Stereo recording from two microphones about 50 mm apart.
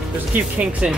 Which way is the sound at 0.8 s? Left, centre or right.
Right.